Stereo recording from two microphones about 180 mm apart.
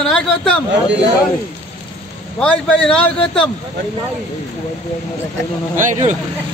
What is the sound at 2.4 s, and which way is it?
A man's voice, 5° left (ahead or behind).